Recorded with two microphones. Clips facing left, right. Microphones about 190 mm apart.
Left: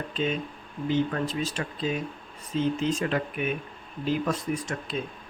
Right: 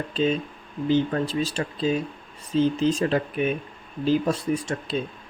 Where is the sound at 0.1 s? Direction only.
30° right (ahead or behind).